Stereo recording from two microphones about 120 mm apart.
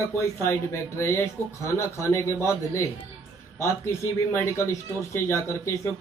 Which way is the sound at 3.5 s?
25° left (ahead or behind).